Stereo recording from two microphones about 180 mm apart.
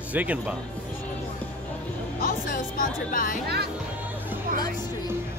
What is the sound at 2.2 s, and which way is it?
Speech, 50° left (ahead or behind).